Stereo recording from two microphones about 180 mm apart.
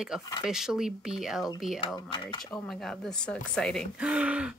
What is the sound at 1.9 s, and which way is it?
Speech, 25° left (ahead or behind).